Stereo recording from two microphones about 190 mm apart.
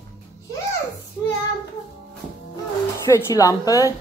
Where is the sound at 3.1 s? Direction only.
15° left (ahead or behind).